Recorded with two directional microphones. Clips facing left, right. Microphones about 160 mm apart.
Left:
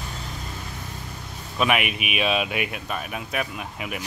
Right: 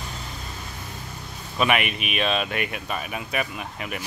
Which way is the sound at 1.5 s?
Centre (ahead or behind).